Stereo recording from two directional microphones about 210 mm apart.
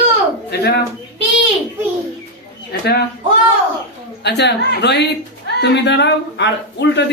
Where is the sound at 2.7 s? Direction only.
50° left (ahead or behind).